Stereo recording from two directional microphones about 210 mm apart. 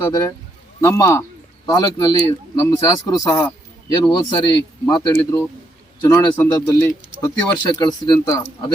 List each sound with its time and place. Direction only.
0.0 s a man's voice: 15° left (ahead or behind)